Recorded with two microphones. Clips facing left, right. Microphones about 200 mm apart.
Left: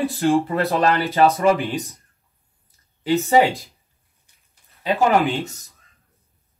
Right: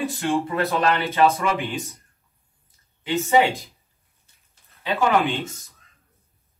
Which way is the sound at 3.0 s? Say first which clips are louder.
Left 3 dB; 40° left (ahead or behind).